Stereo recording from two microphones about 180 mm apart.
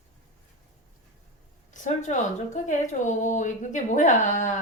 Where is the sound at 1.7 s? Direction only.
40° left (ahead or behind).